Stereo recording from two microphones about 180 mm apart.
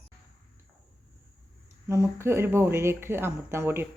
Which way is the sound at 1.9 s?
15° right (ahead or behind).